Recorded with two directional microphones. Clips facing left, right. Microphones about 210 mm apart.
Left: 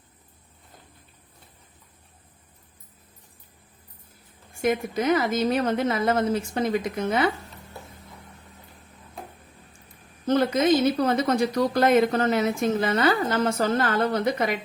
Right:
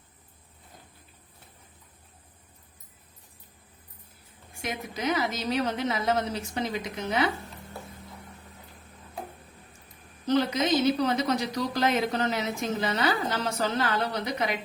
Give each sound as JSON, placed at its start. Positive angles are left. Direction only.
{"t": 4.6, "sound": "a woman's voice", "side_deg": 50}
{"t": 10.2, "sound": "a woman's voice", "side_deg": 50}